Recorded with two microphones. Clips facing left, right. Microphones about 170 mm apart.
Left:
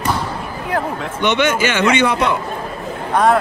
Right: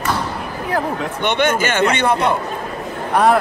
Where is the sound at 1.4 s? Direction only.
50° right (ahead or behind).